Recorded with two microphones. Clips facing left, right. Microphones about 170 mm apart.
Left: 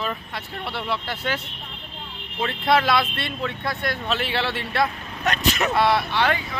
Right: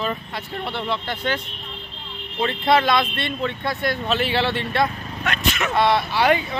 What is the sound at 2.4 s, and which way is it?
Speech, centre (ahead or behind).